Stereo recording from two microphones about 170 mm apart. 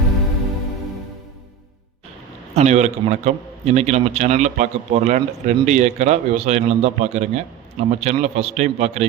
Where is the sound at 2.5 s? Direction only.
40° right (ahead or behind).